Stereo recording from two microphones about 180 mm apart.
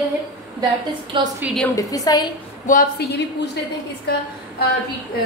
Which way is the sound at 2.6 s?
50° left (ahead or behind).